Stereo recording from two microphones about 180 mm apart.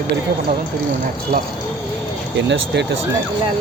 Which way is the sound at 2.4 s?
75° right (ahead or behind).